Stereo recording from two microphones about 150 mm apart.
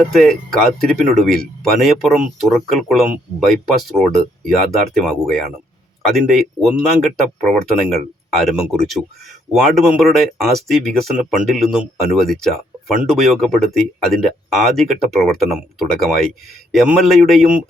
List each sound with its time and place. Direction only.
0.0 s speech: centre (ahead or behind)